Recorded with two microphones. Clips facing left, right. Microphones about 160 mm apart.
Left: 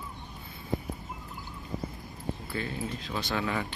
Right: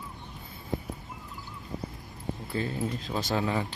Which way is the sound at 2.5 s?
35° right (ahead or behind).